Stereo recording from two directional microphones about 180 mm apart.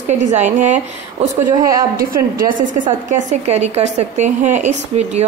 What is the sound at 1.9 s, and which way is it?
Speech, 50° right (ahead or behind).